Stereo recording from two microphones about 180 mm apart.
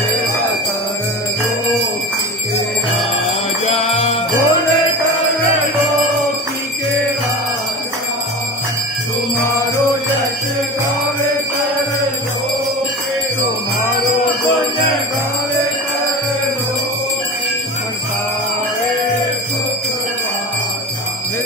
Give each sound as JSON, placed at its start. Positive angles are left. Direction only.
{"t": 4.0, "sound": "music", "side_deg": 35}